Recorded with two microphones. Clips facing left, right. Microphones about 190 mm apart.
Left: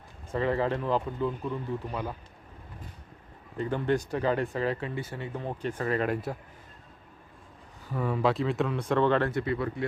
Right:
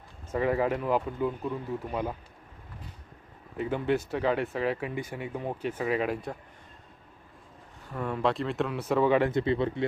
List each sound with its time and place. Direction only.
0.3 s speech: 10° right (ahead or behind)
3.6 s speech: 5° right (ahead or behind)
7.9 s speech: centre (ahead or behind); by 9.4 s 15° right (ahead or behind)
9.4 s speech: 25° right (ahead or behind)